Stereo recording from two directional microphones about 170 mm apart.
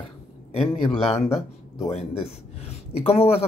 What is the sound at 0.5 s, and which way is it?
Speech, 35° left (ahead or behind).